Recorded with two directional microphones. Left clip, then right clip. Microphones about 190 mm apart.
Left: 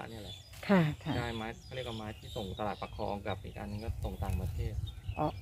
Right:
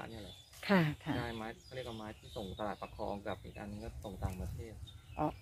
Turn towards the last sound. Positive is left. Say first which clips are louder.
# left 3 dB
turn(degrees=5)  # may be behind; listen again after turning